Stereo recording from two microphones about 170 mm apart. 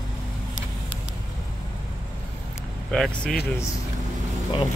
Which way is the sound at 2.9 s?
Centre (ahead or behind).